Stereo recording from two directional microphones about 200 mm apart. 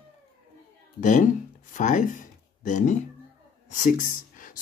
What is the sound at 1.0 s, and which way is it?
Speech, 40° left (ahead or behind).